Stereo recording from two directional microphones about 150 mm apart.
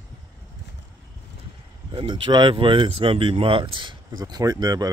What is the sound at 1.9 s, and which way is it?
Speech, 30° right (ahead or behind).